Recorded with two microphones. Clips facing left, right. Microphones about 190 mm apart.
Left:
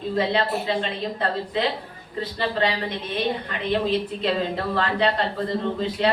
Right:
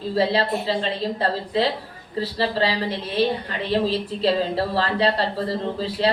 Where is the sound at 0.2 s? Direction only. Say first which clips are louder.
Right 3 dB; 35° right (ahead or behind).